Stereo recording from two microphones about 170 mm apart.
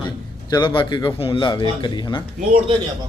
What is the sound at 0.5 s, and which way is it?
Speech, 30° left (ahead or behind).